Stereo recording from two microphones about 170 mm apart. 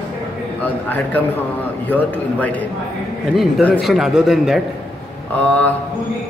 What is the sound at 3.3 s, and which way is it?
A man's voice, centre (ahead or behind).